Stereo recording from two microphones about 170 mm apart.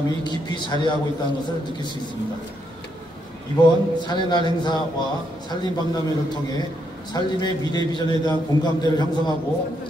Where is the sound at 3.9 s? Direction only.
25° left (ahead or behind).